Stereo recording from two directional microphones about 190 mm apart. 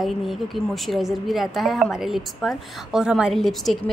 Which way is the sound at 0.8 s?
Centre (ahead or behind).